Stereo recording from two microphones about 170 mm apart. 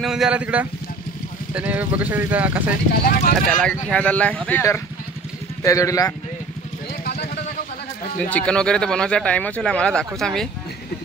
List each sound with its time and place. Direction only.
0.0 s speech: 5° right (ahead or behind)
3.0 s speech: 55° left (ahead or behind)
3.9 s speech: 10° left (ahead or behind)
8.2 s speech: 10° left (ahead or behind)